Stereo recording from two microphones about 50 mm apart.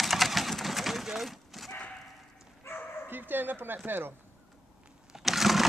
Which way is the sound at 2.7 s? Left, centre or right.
Left.